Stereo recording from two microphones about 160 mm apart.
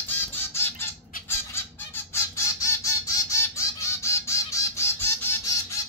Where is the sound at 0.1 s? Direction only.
15° left (ahead or behind).